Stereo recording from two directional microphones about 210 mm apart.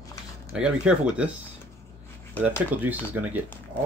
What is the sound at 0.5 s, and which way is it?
Speech, 5° right (ahead or behind).